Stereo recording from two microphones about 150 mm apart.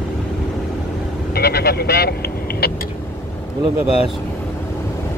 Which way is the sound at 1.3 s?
90° left.